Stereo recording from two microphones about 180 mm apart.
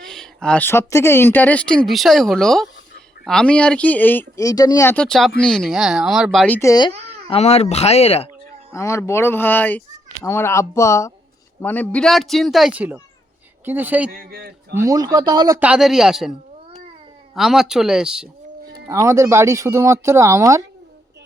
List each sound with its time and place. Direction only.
0.0 s speech: 5° left (ahead or behind)
6.6 s speech: 20° left (ahead or behind)
7.3 s speech: 35° left (ahead or behind)
8.7 s speech: 15° left (ahead or behind); by 14.1 s 10° right (ahead or behind)
14.1 s a man's voice: 60° right (ahead or behind)
14.7 s speech: 15° right (ahead or behind)
15.6 s speech: 5° right (ahead or behind)
17.3 s speech: centre (ahead or behind)
18.9 s speech: 15° right (ahead or behind)